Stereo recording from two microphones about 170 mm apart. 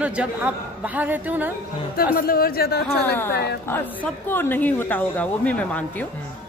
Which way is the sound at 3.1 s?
10° left (ahead or behind).